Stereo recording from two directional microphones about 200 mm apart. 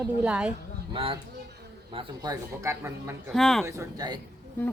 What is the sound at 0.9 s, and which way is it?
Speech, 25° right (ahead or behind).